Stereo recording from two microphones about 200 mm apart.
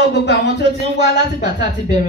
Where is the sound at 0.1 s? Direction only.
60° left (ahead or behind).